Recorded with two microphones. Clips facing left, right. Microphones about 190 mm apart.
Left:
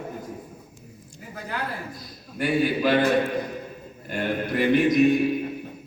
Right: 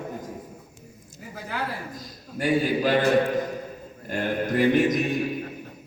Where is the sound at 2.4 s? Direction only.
45° right (ahead or behind).